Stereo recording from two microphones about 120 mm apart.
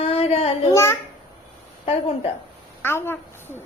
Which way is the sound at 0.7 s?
20° left (ahead or behind).